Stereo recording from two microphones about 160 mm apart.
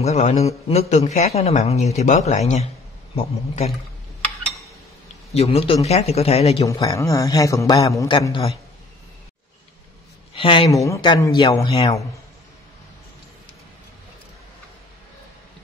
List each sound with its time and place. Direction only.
0.0 s a man's voice: 45° left (ahead or behind)
5.3 s speech: 40° left (ahead or behind)
6.6 s speech: 20° left (ahead or behind)
8.1 s speech: 30° left (ahead or behind)
10.3 s speech: 35° left (ahead or behind)
10.7 s speech: 20° left (ahead or behind)